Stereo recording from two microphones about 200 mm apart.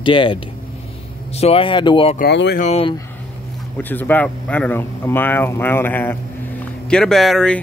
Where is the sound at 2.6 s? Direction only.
30° left (ahead or behind).